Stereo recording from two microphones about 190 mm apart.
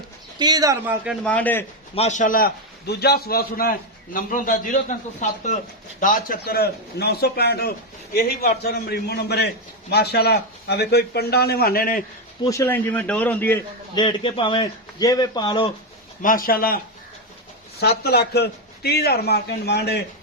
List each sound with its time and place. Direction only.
0.3 s speech: 20° right (ahead or behind)
1.0 s a man's voice: centre (ahead or behind)
2.0 s a man's voice: 40° left (ahead or behind)
6.0 s a man's voice: 45° left (ahead or behind)
12.5 s a man's voice: 15° left (ahead or behind)
13.9 s a man's voice: 25° left (ahead or behind)
16.2 s a man's voice: 45° left (ahead or behind)